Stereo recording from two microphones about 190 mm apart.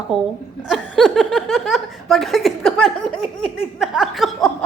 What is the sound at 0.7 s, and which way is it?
Speech, centre (ahead or behind).